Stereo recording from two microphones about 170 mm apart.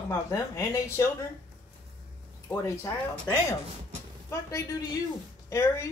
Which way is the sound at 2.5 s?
15° left (ahead or behind).